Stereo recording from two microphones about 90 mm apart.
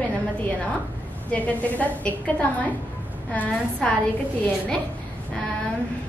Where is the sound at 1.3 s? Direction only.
15° left (ahead or behind).